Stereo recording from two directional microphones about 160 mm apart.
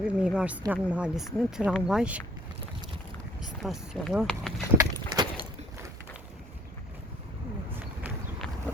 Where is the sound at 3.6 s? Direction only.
Centre (ahead or behind).